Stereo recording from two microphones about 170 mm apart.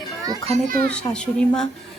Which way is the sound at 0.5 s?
40° right (ahead or behind).